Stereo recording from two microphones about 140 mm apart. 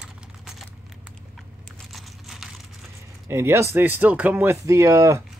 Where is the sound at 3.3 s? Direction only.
20° right (ahead or behind).